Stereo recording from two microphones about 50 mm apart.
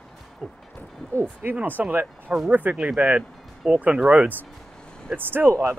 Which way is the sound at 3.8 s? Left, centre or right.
Right.